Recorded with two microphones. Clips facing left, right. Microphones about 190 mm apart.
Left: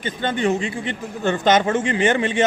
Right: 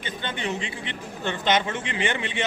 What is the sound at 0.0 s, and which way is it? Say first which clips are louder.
A man's voice: left 9 dB; 45° left (ahead or behind).